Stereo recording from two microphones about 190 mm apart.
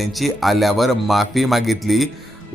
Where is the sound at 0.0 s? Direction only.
Centre (ahead or behind).